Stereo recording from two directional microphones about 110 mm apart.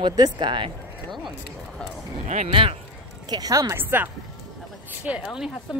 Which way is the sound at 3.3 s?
30° right (ahead or behind).